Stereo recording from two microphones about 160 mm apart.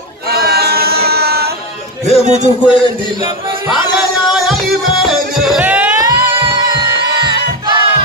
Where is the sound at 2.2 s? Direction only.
45° right (ahead or behind).